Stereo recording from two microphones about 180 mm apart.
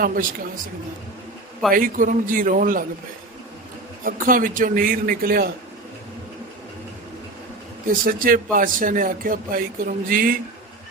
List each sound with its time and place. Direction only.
0.0 s speech: 50° right (ahead or behind)
1.7 s speech: 50° right (ahead or behind)
4.0 s speech: 50° right (ahead or behind)
8.0 s speech: 50° right (ahead or behind)